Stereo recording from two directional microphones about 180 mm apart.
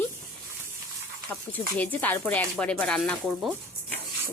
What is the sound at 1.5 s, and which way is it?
A woman's voice, 10° left (ahead or behind).